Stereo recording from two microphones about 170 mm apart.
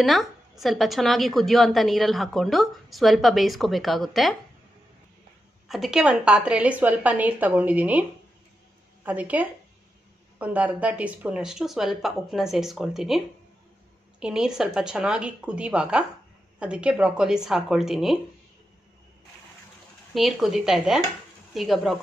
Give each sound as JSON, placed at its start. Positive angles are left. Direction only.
{"t": 0.0, "sound": "a woman's voice", "side_deg": 0}
{"t": 5.7, "sound": "a woman's voice", "side_deg": 0}
{"t": 9.0, "sound": "a woman's voice", "side_deg": -10}
{"t": 14.2, "sound": "a woman's voice", "side_deg": -5}
{"t": 20.2, "sound": "a woman's voice", "side_deg": 0}